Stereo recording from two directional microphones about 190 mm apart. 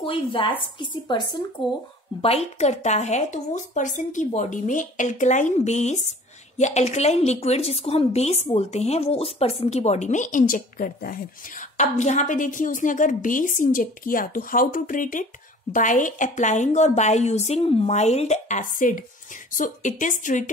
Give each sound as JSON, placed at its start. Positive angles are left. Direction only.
{"t": 0.0, "sound": "speech", "side_deg": 25}
{"t": 2.2, "sound": "a woman's voice", "side_deg": 35}